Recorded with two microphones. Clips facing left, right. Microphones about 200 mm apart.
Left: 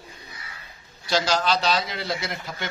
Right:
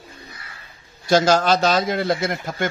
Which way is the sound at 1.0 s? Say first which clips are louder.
Right 7 dB; 50° right (ahead or behind).